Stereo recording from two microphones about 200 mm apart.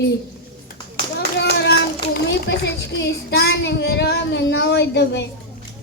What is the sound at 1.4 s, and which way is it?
A child's voice, 55° left (ahead or behind).